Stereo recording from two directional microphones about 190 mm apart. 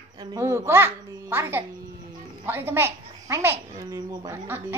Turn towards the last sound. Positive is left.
turn(degrees=-10)  # may be behind; listen again after turning